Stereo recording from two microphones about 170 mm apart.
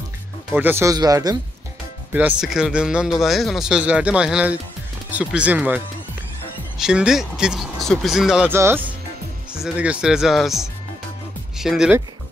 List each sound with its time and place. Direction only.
0.6 s speech: 15° right (ahead or behind)
2.1 s speech: 5° right (ahead or behind)
6.8 s speech: 5° right (ahead or behind)